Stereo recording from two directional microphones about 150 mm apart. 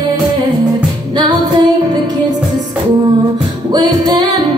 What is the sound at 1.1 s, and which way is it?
Music, 30° right (ahead or behind).